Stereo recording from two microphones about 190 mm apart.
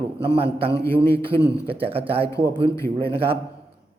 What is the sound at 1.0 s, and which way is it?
Speech, 60° right (ahead or behind).